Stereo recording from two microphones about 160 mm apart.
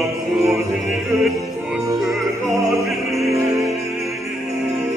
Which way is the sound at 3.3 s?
20° right (ahead or behind).